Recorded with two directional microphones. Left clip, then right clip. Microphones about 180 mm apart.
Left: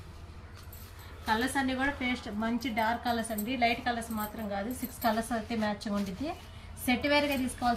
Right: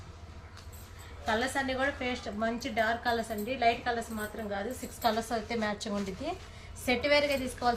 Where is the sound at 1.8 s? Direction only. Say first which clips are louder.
Even; 30° right (ahead or behind).